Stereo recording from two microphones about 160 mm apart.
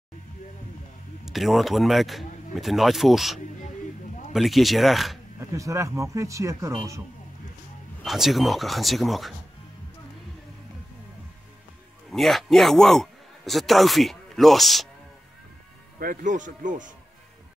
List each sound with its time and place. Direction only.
1.2 s speech: centre (ahead or behind)
5.6 s speech: 20° right (ahead or behind)
8.0 s speech: centre (ahead or behind)
12.1 s a man's voice: centre (ahead or behind)
16.0 s a man's voice: 60° right (ahead or behind)